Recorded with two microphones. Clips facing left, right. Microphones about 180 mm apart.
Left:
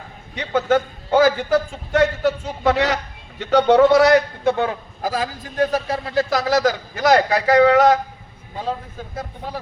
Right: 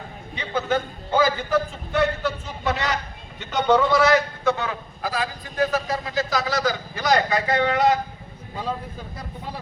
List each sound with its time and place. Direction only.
0.3 s a man's voice: 70° left (ahead or behind)
4.1 s a man's voice: 55° left (ahead or behind)
6.1 s a man's voice: 65° left (ahead or behind); by 7.9 s 80° left